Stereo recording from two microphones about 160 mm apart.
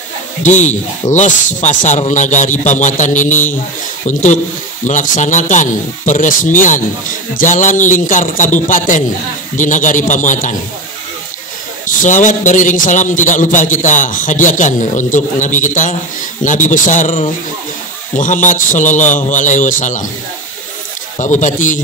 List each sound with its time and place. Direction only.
0.4 s a man's voice: 50° left (ahead or behind)
12.0 s a man's voice: 50° left (ahead or behind)
21.2 s a man's voice: 50° left (ahead or behind)